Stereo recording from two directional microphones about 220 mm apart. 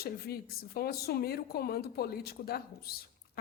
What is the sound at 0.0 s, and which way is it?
A woman's voice, 45° left (ahead or behind).